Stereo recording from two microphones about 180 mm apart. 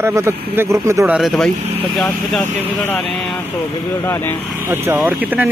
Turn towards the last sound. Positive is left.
turn(degrees=-10)  # may be behind; listen again after turning